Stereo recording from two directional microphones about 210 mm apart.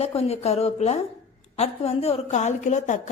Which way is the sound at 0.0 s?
30° left (ahead or behind).